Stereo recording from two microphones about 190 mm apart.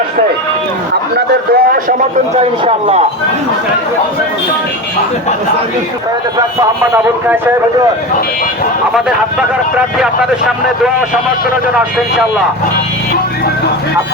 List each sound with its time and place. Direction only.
1.1 s a man's voice: 55° right (ahead or behind)
2.4 s speech: 35° right (ahead or behind)
6.3 s a man's voice: 15° right (ahead or behind)
9.7 s speech: 5° right (ahead or behind)